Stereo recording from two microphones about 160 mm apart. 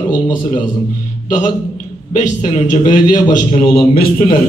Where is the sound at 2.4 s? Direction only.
45° left (ahead or behind).